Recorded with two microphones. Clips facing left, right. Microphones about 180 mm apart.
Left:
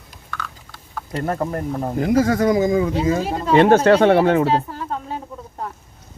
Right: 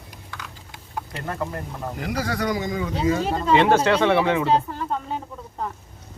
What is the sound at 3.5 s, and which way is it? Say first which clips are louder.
Speech: left 6 dB; 50° left (ahead or behind).